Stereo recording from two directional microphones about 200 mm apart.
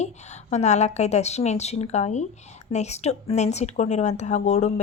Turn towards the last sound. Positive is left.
turn(degrees=35)  # may be behind; listen again after turning